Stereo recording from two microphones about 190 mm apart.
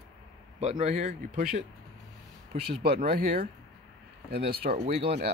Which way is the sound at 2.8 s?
55° right (ahead or behind).